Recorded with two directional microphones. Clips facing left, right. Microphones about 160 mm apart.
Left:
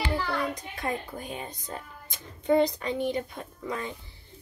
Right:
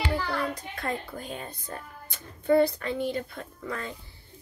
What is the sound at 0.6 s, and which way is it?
A woman's voice, 15° left (ahead or behind).